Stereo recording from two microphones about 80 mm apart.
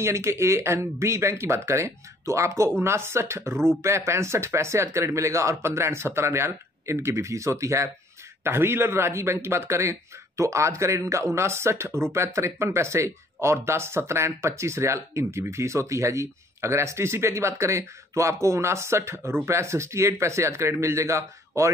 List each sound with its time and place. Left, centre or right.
0.0 s speech: right